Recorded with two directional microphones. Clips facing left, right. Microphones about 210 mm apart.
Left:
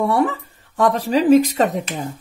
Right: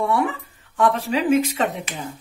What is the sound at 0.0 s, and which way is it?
Speech, 40° left (ahead or behind).